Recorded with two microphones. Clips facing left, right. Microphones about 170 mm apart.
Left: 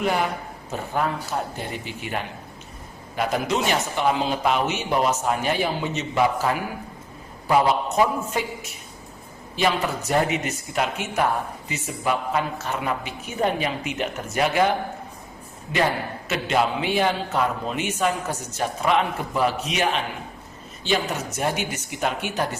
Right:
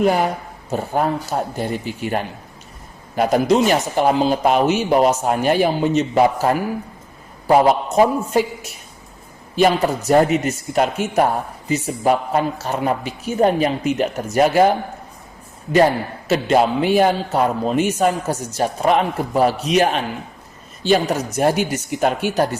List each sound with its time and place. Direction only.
0.0 s a man's voice: 40° right (ahead or behind)
9.6 s a man's voice: 45° right (ahead or behind)
16.3 s a man's voice: 40° right (ahead or behind)